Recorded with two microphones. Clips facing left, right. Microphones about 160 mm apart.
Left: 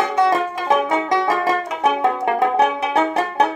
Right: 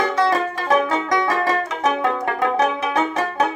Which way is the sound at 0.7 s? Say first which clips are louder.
Left 1 dB; 20° left (ahead or behind).